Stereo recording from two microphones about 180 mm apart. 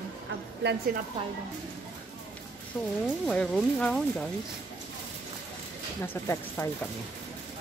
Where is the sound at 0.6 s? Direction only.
70° right (ahead or behind).